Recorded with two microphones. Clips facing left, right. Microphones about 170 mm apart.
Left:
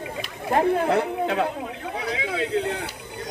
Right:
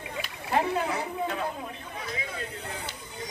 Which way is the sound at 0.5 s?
50° left (ahead or behind).